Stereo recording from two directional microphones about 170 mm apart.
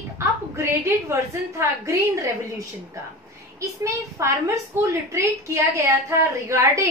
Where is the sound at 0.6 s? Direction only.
15° right (ahead or behind).